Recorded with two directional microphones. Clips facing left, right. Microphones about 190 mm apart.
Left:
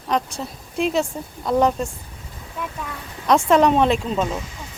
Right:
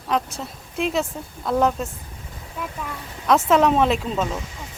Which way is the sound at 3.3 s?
5° right (ahead or behind).